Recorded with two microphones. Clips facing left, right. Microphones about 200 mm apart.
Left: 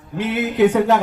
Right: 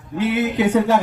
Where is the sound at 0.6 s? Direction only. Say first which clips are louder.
Left 3 dB; 60° left (ahead or behind).